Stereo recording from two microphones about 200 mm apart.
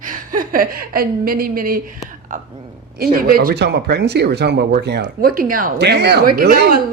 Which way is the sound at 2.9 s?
45° right (ahead or behind).